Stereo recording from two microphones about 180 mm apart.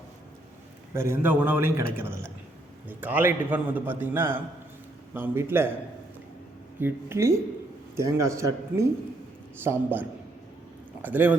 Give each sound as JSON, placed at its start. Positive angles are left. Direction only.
{"t": 0.9, "sound": "a man's voice", "side_deg": -15}
{"t": 6.7, "sound": "a man's voice", "side_deg": -10}